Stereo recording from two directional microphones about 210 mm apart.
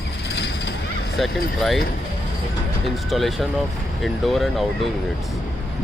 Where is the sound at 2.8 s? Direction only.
Centre (ahead or behind).